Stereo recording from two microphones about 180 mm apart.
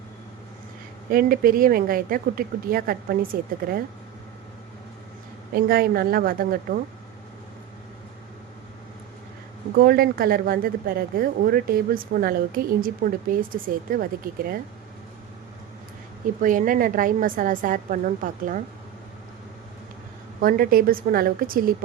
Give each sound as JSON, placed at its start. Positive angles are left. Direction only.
{"t": 1.1, "sound": "speech", "side_deg": -55}
{"t": 5.5, "sound": "a woman's voice", "side_deg": -55}
{"t": 9.7, "sound": "speech", "side_deg": -55}
{"t": 16.4, "sound": "speech", "side_deg": -50}
{"t": 20.4, "sound": "speech", "side_deg": -50}